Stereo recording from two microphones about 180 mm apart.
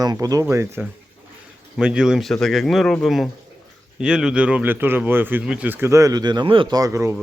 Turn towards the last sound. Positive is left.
turn(degrees=-15)  # may be behind; listen again after turning